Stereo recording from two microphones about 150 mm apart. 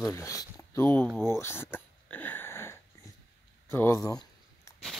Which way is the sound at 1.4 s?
15° left (ahead or behind).